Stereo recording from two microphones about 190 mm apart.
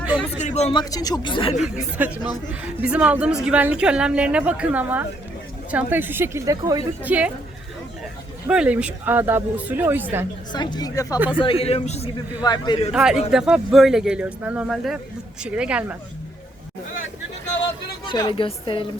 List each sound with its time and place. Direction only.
0.2 s speech: 35° left (ahead or behind)
0.7 s speech: 20° left (ahead or behind)
2.0 s a woman's voice: 10° right (ahead or behind)
7.0 s a woman's voice: 5° right (ahead or behind)
8.4 s a woman's voice: 5° right (ahead or behind)
10.5 s speech: 25° left (ahead or behind)
11.6 s a man's voice: 35° left (ahead or behind)
12.4 s speech: 20° left (ahead or behind)
12.9 s a man's voice: 5° right (ahead or behind)
18.0 s speech: 25° left (ahead or behind)